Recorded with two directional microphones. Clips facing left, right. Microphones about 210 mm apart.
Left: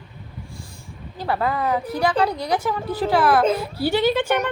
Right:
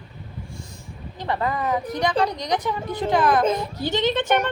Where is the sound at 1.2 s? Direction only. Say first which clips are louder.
Left 2 dB; 10° left (ahead or behind).